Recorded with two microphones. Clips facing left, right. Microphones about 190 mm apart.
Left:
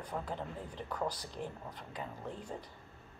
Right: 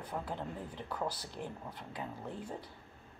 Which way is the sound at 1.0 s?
15° left (ahead or behind).